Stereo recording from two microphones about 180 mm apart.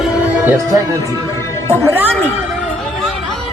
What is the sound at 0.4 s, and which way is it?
Speech, 15° right (ahead or behind).